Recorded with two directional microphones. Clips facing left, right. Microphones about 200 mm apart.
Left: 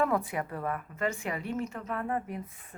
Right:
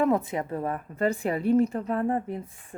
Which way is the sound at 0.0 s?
20° right (ahead or behind).